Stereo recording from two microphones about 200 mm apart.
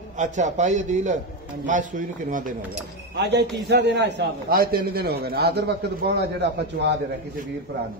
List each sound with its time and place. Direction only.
0.2 s a man's voice: 35° right (ahead or behind)
3.3 s a man's voice: 60° right (ahead or behind)